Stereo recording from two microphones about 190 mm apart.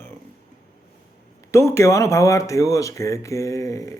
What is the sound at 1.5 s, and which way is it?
Speech, 15° left (ahead or behind).